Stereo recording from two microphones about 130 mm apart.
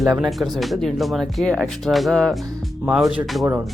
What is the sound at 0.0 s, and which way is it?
Speech, centre (ahead or behind).